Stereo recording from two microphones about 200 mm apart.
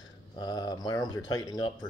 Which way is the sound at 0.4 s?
20° left (ahead or behind).